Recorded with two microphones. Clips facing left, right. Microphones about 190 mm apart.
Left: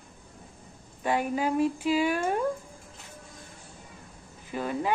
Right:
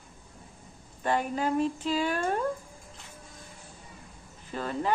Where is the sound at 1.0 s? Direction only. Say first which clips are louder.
Left 1 dB; 10° left (ahead or behind).